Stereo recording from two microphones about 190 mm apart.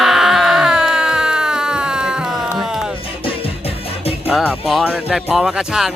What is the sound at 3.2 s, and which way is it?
Music, 30° left (ahead or behind).